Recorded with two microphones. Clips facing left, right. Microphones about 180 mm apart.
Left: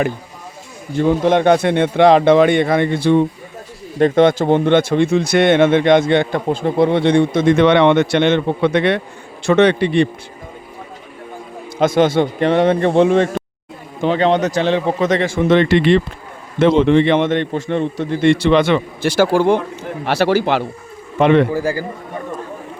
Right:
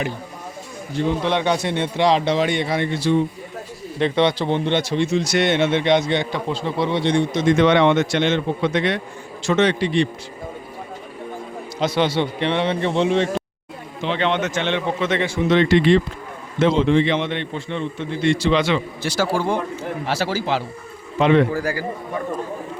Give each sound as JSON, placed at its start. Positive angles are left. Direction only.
{"t": 0.9, "sound": "a man's voice", "side_deg": 50}
{"t": 3.9, "sound": "a man's voice", "side_deg": 45}
{"t": 11.8, "sound": "a man's voice", "side_deg": 50}
{"t": 15.4, "sound": "a man's voice", "side_deg": 55}
{"t": 21.5, "sound": "a man's voice", "side_deg": 25}